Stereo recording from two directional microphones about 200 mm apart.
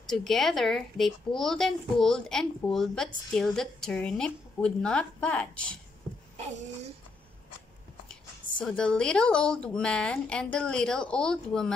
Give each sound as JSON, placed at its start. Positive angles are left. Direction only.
{"t": 0.0, "sound": "speech", "side_deg": 0}
{"t": 6.3, "sound": "a sound", "side_deg": -35}
{"t": 8.5, "sound": "speech", "side_deg": 5}